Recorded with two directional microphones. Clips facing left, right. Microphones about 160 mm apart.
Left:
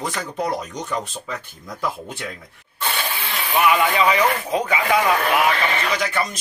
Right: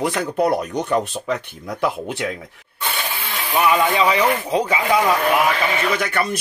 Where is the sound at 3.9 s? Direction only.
25° right (ahead or behind).